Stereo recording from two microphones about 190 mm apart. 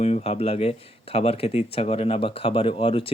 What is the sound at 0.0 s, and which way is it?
Speech, 35° left (ahead or behind).